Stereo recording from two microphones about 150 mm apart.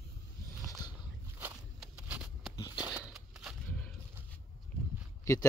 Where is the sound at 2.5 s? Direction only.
25° left (ahead or behind).